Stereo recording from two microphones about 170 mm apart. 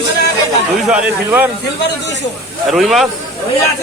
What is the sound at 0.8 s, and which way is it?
Speech, 10° right (ahead or behind).